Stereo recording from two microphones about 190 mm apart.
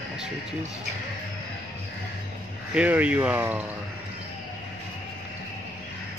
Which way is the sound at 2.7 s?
5° right (ahead or behind).